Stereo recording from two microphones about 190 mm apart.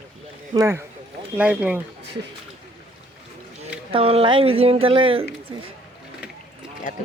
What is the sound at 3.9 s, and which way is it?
Speech, 30° right (ahead or behind).